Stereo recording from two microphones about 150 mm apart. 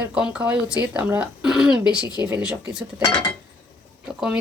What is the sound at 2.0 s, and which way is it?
Speech, 30° left (ahead or behind).